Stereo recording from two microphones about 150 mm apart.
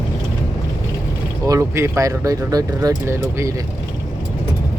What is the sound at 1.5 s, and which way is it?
Speech, 20° right (ahead or behind).